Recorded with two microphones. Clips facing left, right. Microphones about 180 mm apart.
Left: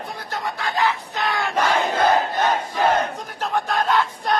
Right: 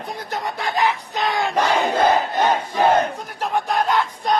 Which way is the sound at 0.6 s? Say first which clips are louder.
Right 1 dB; 15° right (ahead or behind).